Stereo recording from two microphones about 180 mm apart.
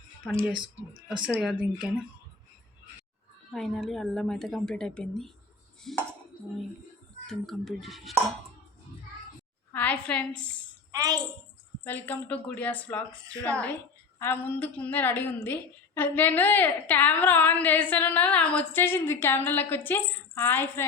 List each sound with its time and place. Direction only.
0.2 s a woman's voice: 5° left (ahead or behind)
1.0 s a woman's voice: 5° right (ahead or behind)
3.5 s a woman's voice: centre (ahead or behind)
5.8 s a sound: centre (ahead or behind)
7.3 s a woman's voice: centre (ahead or behind)
9.7 s a woman's voice: 10° left (ahead or behind)
10.9 s a child's voice: 20° right (ahead or behind)
11.8 s a woman's voice: 10° left (ahead or behind)